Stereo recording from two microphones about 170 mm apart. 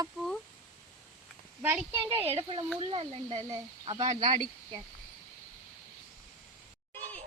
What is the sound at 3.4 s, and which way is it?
Speech, 25° right (ahead or behind).